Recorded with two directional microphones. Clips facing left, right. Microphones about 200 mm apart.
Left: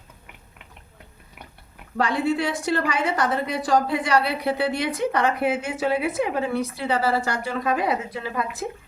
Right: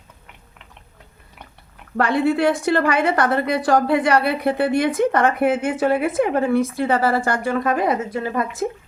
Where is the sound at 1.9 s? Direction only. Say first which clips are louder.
Right 4 dB; 60° right (ahead or behind).